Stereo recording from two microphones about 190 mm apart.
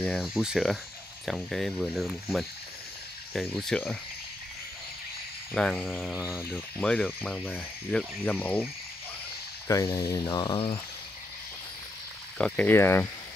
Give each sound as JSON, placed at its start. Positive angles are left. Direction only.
{"t": 0.0, "sound": "speech", "side_deg": 0}
{"t": 5.5, "sound": "speech", "side_deg": 5}
{"t": 9.7, "sound": "speech", "side_deg": 15}
{"t": 12.4, "sound": "speech", "side_deg": 5}